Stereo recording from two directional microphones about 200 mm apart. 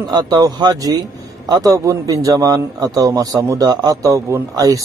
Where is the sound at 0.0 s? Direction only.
20° right (ahead or behind).